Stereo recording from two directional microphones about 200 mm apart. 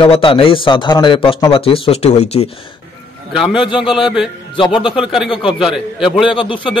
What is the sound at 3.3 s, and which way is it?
Speech, centre (ahead or behind).